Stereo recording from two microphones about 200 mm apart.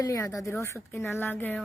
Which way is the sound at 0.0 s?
15° left (ahead or behind).